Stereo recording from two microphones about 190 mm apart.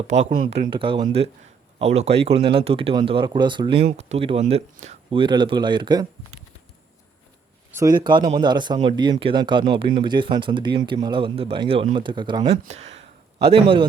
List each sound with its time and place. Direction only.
0.1 s speech: 40° right (ahead or behind)
0.7 s speech: 25° right (ahead or behind)
7.7 s speech: 15° right (ahead or behind)